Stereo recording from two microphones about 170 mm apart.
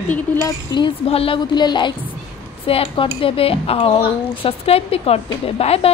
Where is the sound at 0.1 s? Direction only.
15° left (ahead or behind).